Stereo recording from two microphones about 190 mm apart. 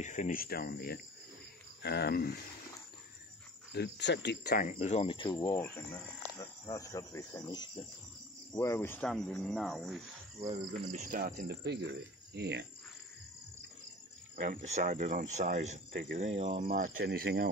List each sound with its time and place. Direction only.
0.0 s speech: 40° left (ahead or behind)
1.8 s cricket: 60° left (ahead or behind)
3.7 s speech: 65° left (ahead or behind)
4.6 s speech: 40° left (ahead or behind)
5.0 s speech: 25° left (ahead or behind); by 10.0 s centre (ahead or behind)
10.4 s speech: 35° right (ahead or behind)
11.1 s speech: 50° right (ahead or behind)
14.3 s speech: 45° right (ahead or behind)